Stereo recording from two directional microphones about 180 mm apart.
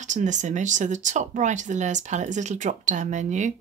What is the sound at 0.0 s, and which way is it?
Speech, 45° right (ahead or behind).